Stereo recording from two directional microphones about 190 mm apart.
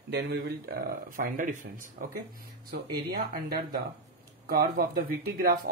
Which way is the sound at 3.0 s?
50° right (ahead or behind).